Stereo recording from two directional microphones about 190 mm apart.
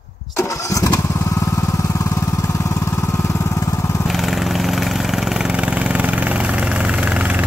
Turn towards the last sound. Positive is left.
turn(degrees=-5)  # may be behind; listen again after turning